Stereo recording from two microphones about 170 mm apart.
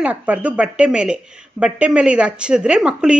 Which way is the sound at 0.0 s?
10° right (ahead or behind).